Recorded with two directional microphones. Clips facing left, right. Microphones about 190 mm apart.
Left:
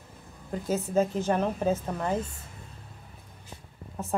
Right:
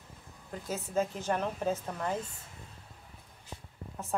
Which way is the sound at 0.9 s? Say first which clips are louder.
Left 5 dB; 25° left (ahead or behind).